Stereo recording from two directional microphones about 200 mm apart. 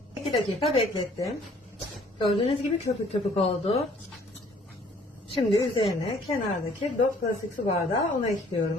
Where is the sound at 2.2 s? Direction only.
25° left (ahead or behind).